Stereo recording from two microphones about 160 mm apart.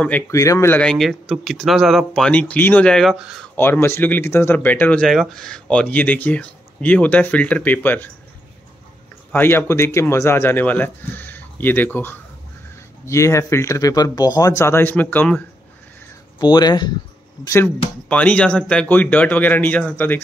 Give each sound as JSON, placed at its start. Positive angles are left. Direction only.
{"t": 0.3, "sound": "speech", "side_deg": 20}
{"t": 3.5, "sound": "speech", "side_deg": 15}
{"t": 9.3, "sound": "speech", "side_deg": 15}
{"t": 16.3, "sound": "speech", "side_deg": 25}
{"t": 18.0, "sound": "speech", "side_deg": 10}